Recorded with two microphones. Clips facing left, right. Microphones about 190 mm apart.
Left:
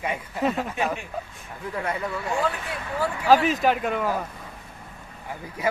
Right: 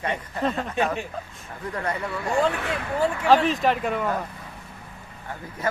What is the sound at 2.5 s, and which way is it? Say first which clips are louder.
Speech: right 5 dB; 75° right (ahead or behind).